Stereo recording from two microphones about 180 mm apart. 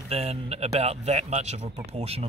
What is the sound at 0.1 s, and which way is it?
Speech, 35° right (ahead or behind).